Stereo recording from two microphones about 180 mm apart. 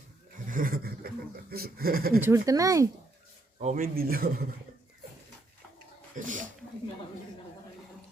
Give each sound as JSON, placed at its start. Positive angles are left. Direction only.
{"t": 0.4, "sound": "speech", "side_deg": -50}
{"t": 2.2, "sound": "speech", "side_deg": -15}
{"t": 3.8, "sound": "speech", "side_deg": -55}
{"t": 6.1, "sound": "speech", "side_deg": -45}